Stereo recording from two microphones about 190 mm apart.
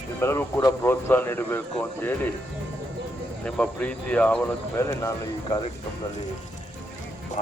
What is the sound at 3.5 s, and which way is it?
Speech, 5° left (ahead or behind).